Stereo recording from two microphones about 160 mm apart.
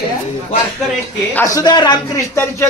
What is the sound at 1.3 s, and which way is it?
Speech, 20° left (ahead or behind).